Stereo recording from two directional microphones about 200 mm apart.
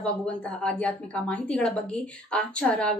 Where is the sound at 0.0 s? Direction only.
5° left (ahead or behind).